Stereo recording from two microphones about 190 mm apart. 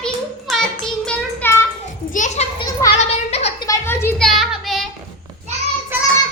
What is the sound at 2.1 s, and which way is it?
Children playing, 40° left (ahead or behind).